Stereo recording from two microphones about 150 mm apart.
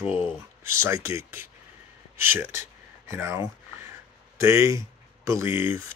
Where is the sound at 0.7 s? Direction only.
20° right (ahead or behind).